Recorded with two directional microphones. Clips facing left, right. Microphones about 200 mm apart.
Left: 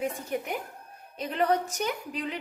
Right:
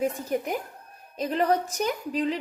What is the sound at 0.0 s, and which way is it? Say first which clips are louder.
A woman's voice: right 4 dB; 40° right (ahead or behind).